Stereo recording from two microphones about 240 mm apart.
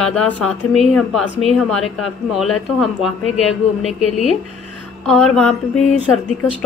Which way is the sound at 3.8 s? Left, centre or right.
Left.